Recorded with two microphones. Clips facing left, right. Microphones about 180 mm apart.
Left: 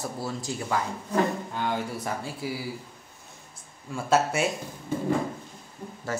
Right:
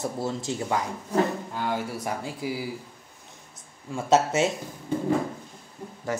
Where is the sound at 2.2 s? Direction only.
20° right (ahead or behind).